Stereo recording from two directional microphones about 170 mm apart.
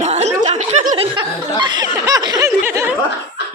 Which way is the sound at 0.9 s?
25° right (ahead or behind).